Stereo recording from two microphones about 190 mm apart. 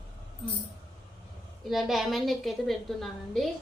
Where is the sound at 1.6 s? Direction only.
Centre (ahead or behind).